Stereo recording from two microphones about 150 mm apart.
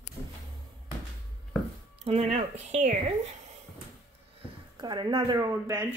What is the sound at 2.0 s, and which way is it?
Speech, 45° right (ahead or behind).